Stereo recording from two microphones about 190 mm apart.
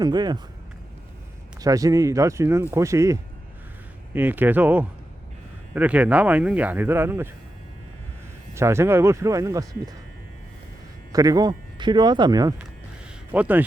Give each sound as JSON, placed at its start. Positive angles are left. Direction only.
{"t": 0.0, "sound": "speech", "side_deg": -20}
{"t": 1.6, "sound": "speech", "side_deg": -15}
{"t": 8.5, "sound": "speech", "side_deg": -15}
{"t": 11.1, "sound": "speech", "side_deg": -20}
{"t": 13.3, "sound": "speech", "side_deg": -10}